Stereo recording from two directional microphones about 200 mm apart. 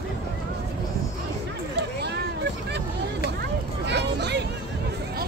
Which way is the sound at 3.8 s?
55° right (ahead or behind).